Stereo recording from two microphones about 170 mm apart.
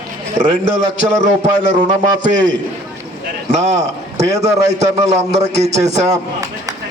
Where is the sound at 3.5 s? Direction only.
45° right (ahead or behind).